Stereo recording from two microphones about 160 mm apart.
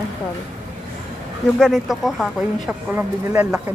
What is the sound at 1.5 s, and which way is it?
Speech, centre (ahead or behind).